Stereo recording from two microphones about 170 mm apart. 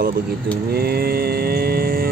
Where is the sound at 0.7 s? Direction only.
65° right (ahead or behind).